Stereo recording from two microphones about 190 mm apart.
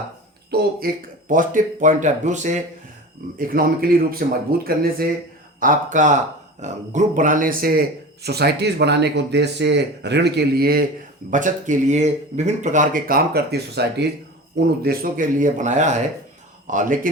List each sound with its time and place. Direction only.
0.5 s speech: 55° right (ahead or behind)
1.3 s speech: 45° right (ahead or behind)
11.3 s speech: 40° right (ahead or behind); by 14.1 s 60° right (ahead or behind)
14.8 s speech: 50° right (ahead or behind)